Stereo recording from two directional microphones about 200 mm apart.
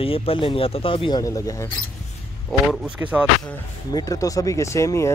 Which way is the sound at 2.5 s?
5° right (ahead or behind).